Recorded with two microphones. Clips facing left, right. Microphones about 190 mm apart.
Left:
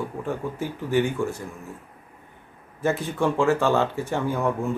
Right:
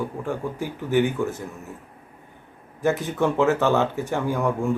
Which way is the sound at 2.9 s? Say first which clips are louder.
Left 1 dB; 20° right (ahead or behind).